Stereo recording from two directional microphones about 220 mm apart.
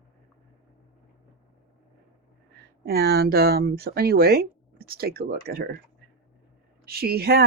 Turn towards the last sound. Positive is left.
turn(degrees=-45)  # may be behind; listen again after turning